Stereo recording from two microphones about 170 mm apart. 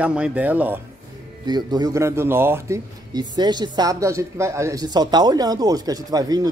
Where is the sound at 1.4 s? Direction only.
25° right (ahead or behind).